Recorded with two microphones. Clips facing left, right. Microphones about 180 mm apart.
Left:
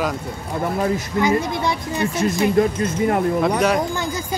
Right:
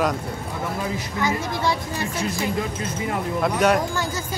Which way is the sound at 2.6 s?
50° left (ahead or behind).